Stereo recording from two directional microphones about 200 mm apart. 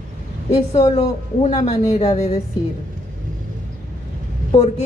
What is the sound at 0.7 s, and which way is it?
A woman's voice, 30° left (ahead or behind).